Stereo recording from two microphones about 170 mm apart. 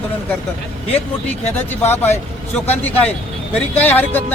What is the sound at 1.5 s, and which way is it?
Speech, 10° left (ahead or behind).